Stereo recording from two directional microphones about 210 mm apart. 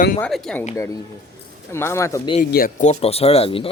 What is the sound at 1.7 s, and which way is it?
Speech, 10° left (ahead or behind).